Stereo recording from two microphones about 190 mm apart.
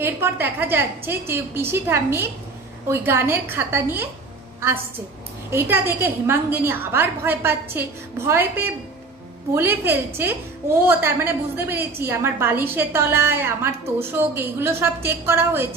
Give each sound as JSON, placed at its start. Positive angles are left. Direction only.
{"t": 0.0, "sound": "a woman's voice", "side_deg": -10}